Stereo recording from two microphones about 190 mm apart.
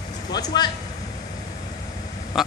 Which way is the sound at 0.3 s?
20° left (ahead or behind).